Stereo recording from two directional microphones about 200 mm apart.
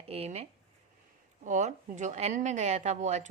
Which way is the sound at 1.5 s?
35° right (ahead or behind).